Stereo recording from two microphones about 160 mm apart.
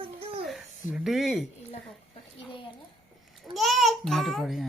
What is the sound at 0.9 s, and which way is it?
Speech, 5° right (ahead or behind).